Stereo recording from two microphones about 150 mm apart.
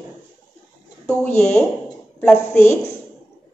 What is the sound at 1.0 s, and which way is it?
A woman's voice, 10° left (ahead or behind).